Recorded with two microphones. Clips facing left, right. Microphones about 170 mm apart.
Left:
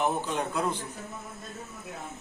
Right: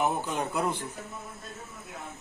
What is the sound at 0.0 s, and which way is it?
Speech, 10° right (ahead or behind).